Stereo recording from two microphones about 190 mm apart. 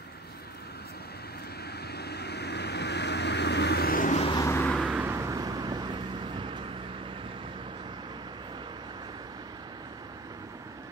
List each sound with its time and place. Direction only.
1.9 s vehicle: 60° left (ahead or behind)
4.2 s vehicle: 25° left (ahead or behind)
4.5 s vehicle: 10° left (ahead or behind)
4.7 s vehicle: 5° right (ahead or behind)
5.1 s vehicle: 15° right (ahead or behind)